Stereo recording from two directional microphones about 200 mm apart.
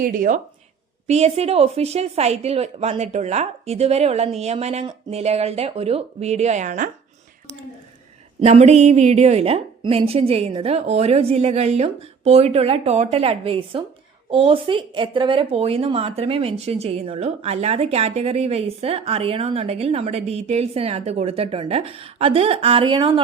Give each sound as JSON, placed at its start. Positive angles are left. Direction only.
{"t": 0.0, "sound": "speech", "side_deg": -45}
{"t": 1.0, "sound": "a woman's voice", "side_deg": -30}
{"t": 8.4, "sound": "a woman's voice", "side_deg": -35}